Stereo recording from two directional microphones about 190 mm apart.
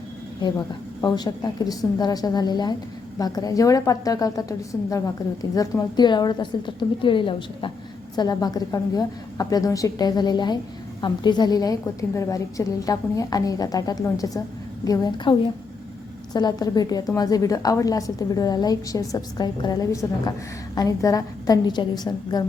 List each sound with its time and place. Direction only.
0.4 s a woman's voice: 25° left (ahead or behind)